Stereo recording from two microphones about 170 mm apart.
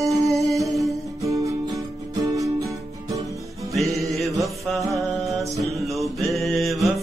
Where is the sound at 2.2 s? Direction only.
20° right (ahead or behind).